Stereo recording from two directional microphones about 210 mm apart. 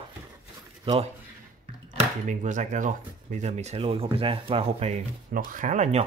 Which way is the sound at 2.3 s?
35° right (ahead or behind).